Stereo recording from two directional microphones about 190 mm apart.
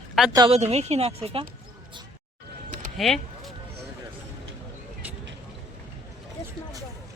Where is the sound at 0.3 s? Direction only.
30° right (ahead or behind).